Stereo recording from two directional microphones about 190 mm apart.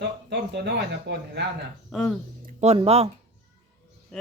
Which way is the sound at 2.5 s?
35° right (ahead or behind).